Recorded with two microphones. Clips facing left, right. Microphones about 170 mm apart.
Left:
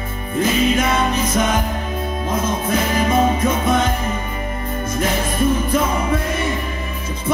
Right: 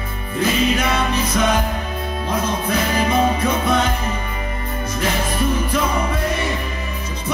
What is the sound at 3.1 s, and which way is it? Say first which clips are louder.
Music: left 2 dB; 45° left (ahead or behind).